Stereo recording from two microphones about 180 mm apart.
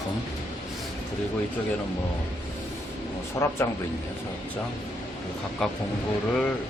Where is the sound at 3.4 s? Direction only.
15° left (ahead or behind).